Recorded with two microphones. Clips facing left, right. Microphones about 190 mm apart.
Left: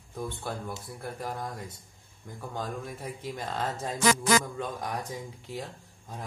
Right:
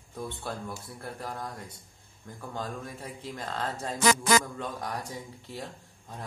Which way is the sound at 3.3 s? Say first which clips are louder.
Even; 10° left (ahead or behind).